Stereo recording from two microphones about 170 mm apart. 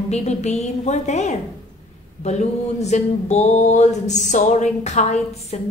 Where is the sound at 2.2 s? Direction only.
40° left (ahead or behind).